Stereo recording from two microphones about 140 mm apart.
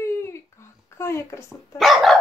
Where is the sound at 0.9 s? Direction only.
20° left (ahead or behind).